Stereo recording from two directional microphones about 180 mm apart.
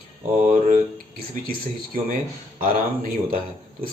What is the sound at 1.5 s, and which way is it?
Speech, 55° right (ahead or behind).